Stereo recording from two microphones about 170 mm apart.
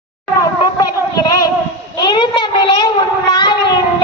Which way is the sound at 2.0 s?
25° left (ahead or behind).